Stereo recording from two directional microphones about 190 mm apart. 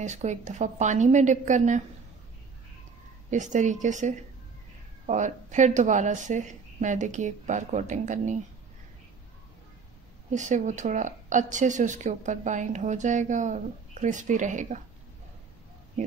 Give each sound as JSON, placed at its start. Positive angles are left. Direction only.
{"t": 0.0, "sound": "speech", "side_deg": -40}
{"t": 3.3, "sound": "speech", "side_deg": -40}
{"t": 10.3, "sound": "speech", "side_deg": -40}